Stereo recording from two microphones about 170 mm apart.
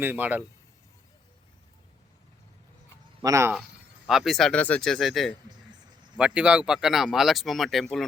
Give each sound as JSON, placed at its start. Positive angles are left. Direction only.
{"t": 0.0, "sound": "a man's voice", "side_deg": -10}
{"t": 3.2, "sound": "speech", "side_deg": -15}
{"t": 3.5, "sound": "speech", "side_deg": 0}